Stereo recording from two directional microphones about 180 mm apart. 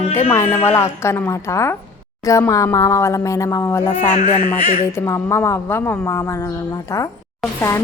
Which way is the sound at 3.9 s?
40° left (ahead or behind).